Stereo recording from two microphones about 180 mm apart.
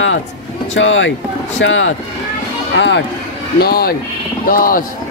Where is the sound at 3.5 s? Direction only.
60° left (ahead or behind).